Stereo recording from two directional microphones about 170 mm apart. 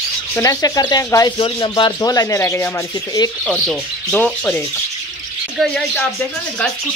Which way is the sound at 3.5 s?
5° left (ahead or behind).